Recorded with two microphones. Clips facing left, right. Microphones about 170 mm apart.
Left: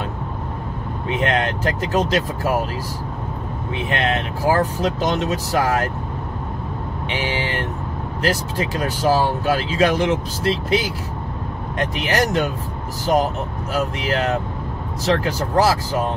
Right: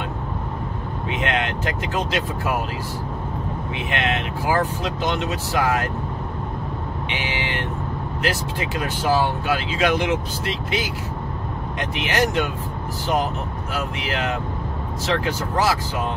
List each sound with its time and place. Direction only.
1.2 s speech: 35° left (ahead or behind)
3.9 s speech: 40° left (ahead or behind)
7.1 s speech: 40° left (ahead or behind)
11.9 s speech: 35° left (ahead or behind)
13.7 s speech: 35° left (ahead or behind)